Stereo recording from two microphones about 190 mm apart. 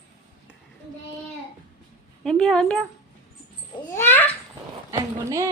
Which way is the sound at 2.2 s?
5° left (ahead or behind).